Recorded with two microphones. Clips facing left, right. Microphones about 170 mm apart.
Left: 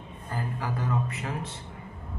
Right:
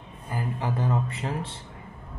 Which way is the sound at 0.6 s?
30° right (ahead or behind).